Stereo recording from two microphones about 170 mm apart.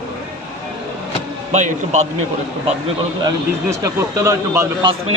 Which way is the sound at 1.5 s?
40° right (ahead or behind).